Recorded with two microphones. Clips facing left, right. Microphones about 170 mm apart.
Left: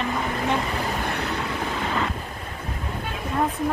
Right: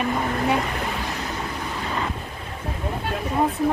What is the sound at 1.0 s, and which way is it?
Vehicle, 65° left (ahead or behind).